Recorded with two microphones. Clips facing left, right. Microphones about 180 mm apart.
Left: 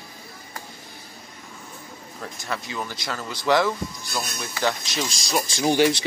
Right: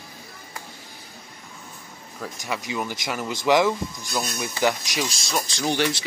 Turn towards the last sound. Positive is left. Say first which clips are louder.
# left 4 dB
turn(degrees=15)  # may be behind; listen again after turning